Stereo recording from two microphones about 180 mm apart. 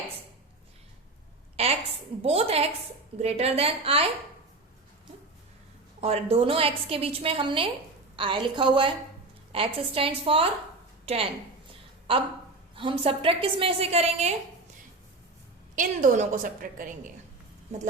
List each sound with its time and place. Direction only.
2.2 s a woman's voice: 35° right (ahead or behind)
6.0 s a woman's voice: 35° right (ahead or behind)
15.7 s a woman's voice: 50° right (ahead or behind)